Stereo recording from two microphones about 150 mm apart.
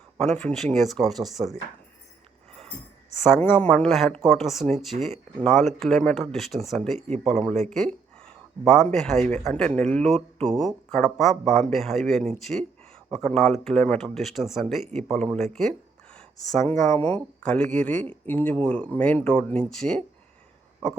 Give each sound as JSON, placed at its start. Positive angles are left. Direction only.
{"t": 0.2, "sound": "speech", "side_deg": 5}
{"t": 3.3, "sound": "speech", "side_deg": 15}
{"t": 7.7, "sound": "a sound", "side_deg": 5}
{"t": 8.9, "sound": "speech", "side_deg": 0}
{"t": 16.5, "sound": "speech", "side_deg": 5}
{"t": 16.9, "sound": "speech", "side_deg": 25}
{"t": 17.4, "sound": "speech", "side_deg": 5}